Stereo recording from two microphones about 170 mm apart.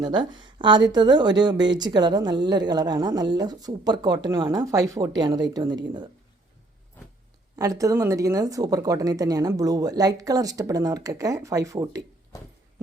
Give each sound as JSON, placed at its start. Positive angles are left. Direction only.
{"t": 0.0, "sound": "a woman's voice", "side_deg": -25}
{"t": 7.5, "sound": "a woman's voice", "side_deg": -20}